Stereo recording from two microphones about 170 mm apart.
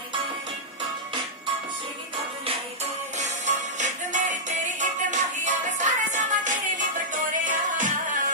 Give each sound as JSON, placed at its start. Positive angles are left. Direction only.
{"t": 3.2, "sound": "music", "side_deg": -45}